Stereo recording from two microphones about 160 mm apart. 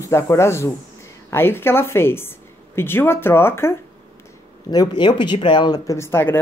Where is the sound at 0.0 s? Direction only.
20° left (ahead or behind).